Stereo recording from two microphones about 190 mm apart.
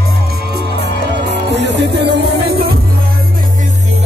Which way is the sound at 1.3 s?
65° right (ahead or behind).